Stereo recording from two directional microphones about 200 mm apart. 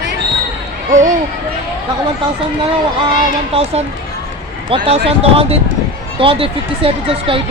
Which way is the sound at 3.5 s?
30° right (ahead or behind).